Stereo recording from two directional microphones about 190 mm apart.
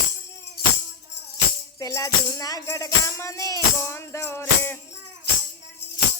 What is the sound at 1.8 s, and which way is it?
Music, 15° left (ahead or behind).